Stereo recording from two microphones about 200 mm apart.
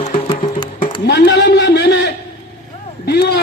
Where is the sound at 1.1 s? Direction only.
60° left (ahead or behind).